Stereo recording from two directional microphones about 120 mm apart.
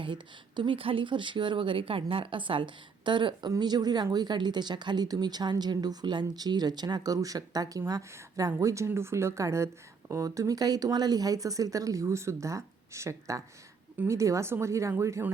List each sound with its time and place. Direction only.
0.0 s speech: 40° right (ahead or behind); by 15.3 s 25° right (ahead or behind)